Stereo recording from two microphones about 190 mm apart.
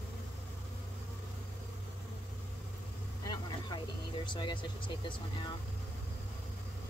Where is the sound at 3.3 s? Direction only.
25° left (ahead or behind).